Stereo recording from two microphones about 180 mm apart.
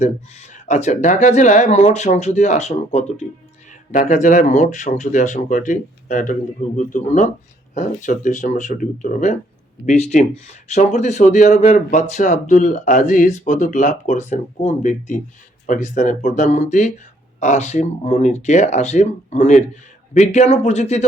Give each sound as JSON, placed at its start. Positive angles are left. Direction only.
{"t": 0.0, "sound": "speech", "side_deg": 40}